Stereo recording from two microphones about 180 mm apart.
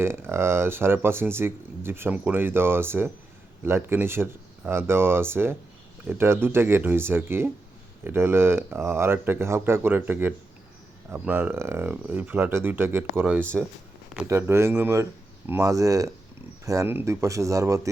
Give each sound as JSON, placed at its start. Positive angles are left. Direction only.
{"t": 0.0, "sound": "speech", "side_deg": -15}